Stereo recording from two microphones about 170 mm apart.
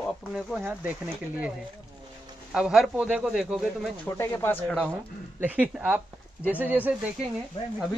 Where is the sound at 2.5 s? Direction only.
5° right (ahead or behind).